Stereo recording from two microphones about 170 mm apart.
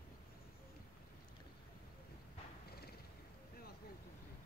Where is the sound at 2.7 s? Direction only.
65° left (ahead or behind).